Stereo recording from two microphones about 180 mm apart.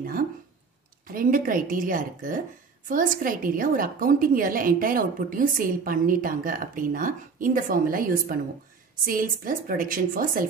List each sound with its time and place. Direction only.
1.0 s a woman's voice: 50° right (ahead or behind)